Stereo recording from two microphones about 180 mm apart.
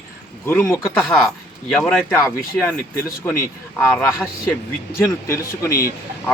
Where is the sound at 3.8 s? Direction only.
Centre (ahead or behind).